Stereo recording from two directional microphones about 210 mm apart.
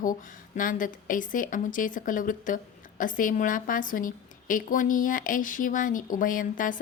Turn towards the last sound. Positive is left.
turn(degrees=40)  # may be behind; listen again after turning